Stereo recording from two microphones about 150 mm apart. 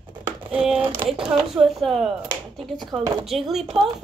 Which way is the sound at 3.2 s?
Centre (ahead or behind).